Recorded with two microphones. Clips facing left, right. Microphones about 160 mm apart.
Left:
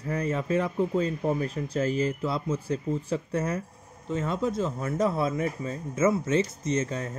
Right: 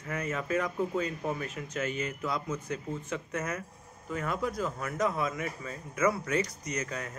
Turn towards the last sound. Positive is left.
turn(degrees=30)  # may be behind; listen again after turning